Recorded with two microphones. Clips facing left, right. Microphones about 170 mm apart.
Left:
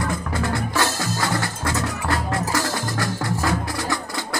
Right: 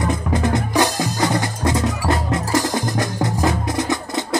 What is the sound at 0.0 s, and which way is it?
Music, 20° right (ahead or behind).